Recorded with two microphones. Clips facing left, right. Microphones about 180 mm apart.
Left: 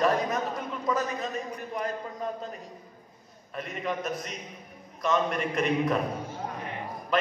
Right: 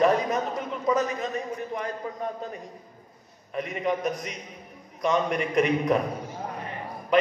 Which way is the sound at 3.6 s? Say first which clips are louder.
Right 5 dB; 15° right (ahead or behind).